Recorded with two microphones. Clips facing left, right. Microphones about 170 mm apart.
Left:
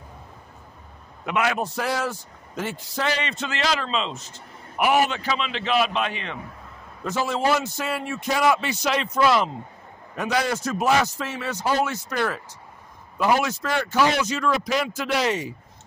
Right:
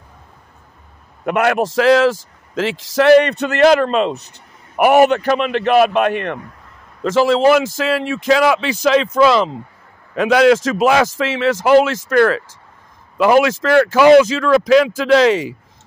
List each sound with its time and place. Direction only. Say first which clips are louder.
1.2 s a man's voice: right 8 dB; 60° right (ahead or behind)
7.0 s a man's voice: right 11 dB; 90° right